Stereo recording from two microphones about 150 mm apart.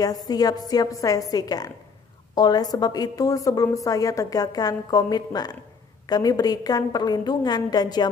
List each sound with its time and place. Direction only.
0.0 s a woman's voice: 25° left (ahead or behind)